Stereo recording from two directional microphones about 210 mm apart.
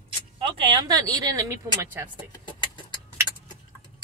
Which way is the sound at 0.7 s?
20° right (ahead or behind).